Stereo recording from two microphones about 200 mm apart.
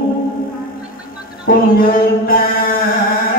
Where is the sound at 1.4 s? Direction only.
45° left (ahead or behind).